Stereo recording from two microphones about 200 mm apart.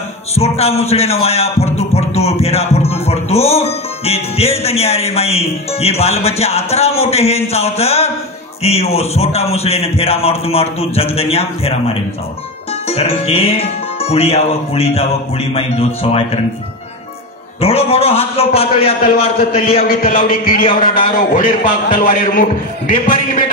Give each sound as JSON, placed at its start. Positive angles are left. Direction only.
{"t": 0.3, "sound": "speech", "side_deg": 30}
{"t": 12.8, "sound": "music", "side_deg": 30}
{"t": 17.6, "sound": "music", "side_deg": 30}
{"t": 19.9, "sound": "a man's voice", "side_deg": 45}